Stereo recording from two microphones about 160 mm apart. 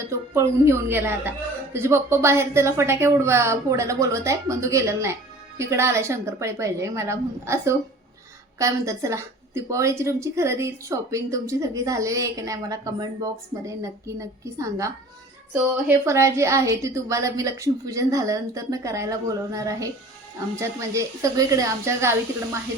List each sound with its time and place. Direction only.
0.1 s a woman's voice: 15° right (ahead or behind)
16.0 s a woman's voice: 15° right (ahead or behind)